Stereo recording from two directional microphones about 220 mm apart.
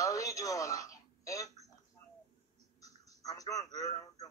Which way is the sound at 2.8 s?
15° left (ahead or behind).